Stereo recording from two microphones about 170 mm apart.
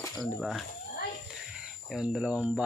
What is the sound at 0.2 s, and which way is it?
Speech, centre (ahead or behind).